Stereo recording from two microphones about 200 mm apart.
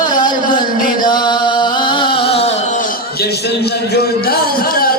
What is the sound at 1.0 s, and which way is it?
Music, 20° left (ahead or behind).